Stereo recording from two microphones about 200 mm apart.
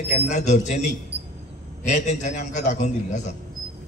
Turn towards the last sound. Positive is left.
turn(degrees=35)  # may be behind; listen again after turning